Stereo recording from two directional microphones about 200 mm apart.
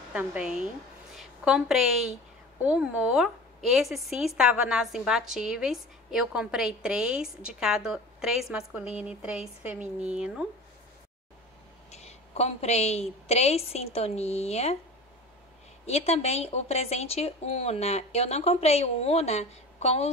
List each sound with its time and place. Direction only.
0.1 s a woman's voice: 5° right (ahead or behind)
11.9 s speech: 30° left (ahead or behind)
15.8 s speech: 30° left (ahead or behind)